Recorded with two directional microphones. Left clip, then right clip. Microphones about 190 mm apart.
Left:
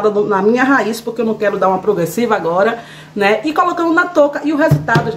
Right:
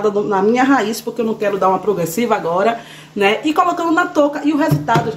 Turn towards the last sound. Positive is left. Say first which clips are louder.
# left 2 dB
turn(degrees=0)  # may be behind; listen again after turning